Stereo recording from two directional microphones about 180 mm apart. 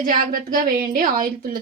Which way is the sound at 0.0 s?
50° right (ahead or behind).